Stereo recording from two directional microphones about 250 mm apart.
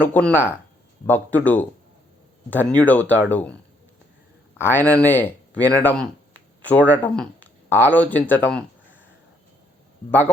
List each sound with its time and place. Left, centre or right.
0.0 s speech: centre
10.1 s speech: centre